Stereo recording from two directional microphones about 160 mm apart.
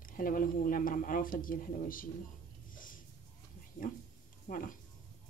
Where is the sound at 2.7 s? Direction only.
60° left (ahead or behind).